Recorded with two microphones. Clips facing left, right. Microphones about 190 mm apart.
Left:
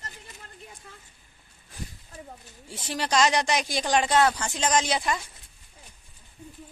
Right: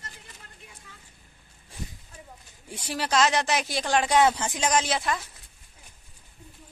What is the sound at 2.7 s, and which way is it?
Speech, 5° right (ahead or behind).